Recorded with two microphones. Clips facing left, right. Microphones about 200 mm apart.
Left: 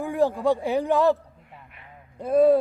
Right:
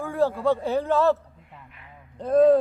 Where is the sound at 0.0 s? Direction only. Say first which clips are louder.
Left 1 dB; 15° left (ahead or behind).